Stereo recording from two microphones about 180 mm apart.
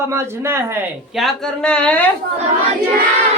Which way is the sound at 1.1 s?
Centre (ahead or behind).